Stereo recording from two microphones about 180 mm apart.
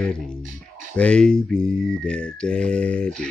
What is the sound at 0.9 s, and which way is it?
Speech, 5° left (ahead or behind).